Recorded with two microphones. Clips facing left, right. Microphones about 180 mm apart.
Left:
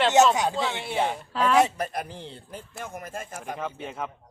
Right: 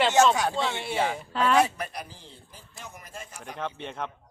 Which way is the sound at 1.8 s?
50° left (ahead or behind).